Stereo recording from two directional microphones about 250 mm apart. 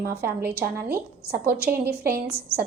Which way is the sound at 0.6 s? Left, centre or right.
Right.